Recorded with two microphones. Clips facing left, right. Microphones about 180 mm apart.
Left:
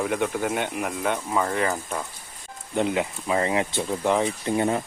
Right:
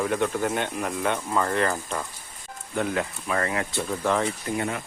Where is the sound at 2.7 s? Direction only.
20° left (ahead or behind).